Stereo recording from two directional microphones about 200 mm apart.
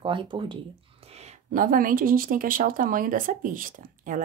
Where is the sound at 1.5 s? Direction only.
45° right (ahead or behind).